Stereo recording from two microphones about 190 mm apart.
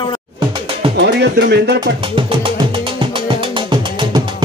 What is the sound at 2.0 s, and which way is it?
Music, 25° right (ahead or behind).